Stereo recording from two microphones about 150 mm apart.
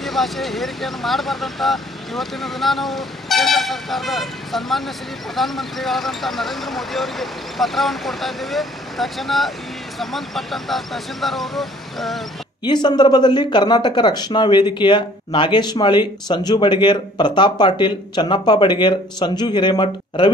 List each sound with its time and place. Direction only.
0.0 s speech: centre (ahead or behind)
12.6 s speech: 30° left (ahead or behind)